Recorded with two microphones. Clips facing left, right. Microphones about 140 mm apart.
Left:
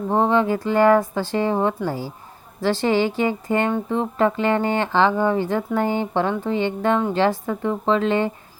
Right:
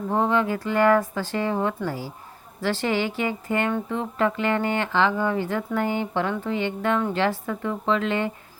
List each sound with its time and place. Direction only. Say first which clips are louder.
0.1 s speech: left 4 dB; 30° left (ahead or behind)